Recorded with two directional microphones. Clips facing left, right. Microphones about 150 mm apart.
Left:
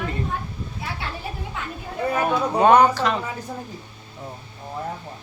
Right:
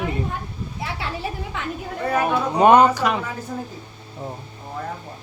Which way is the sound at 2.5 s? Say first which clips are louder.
Right 2 dB; 20° right (ahead or behind).